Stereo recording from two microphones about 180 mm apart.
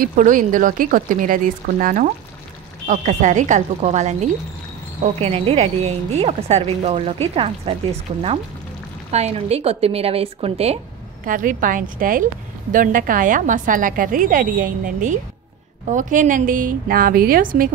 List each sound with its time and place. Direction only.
0.0 s a woman's voice: 50° right (ahead or behind)
11.2 s a woman's voice: 50° right (ahead or behind)